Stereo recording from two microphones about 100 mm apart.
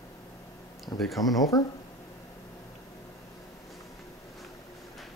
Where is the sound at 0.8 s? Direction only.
Centre (ahead or behind).